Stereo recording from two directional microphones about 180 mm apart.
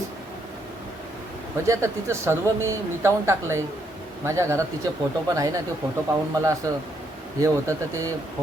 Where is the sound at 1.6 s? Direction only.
15° right (ahead or behind).